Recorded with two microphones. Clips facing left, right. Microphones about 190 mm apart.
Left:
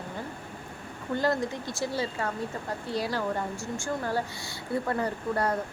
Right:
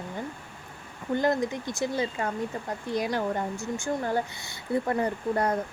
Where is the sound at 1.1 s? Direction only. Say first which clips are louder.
Right 2 dB; 20° right (ahead or behind).